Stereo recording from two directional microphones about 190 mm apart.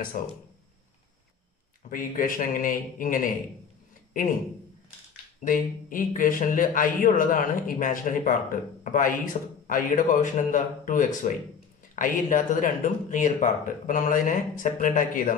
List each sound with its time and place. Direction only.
0.2 s a man's voice: 45° left (ahead or behind)
1.9 s a man's voice: 45° left (ahead or behind)
5.4 s a man's voice: 45° left (ahead or behind)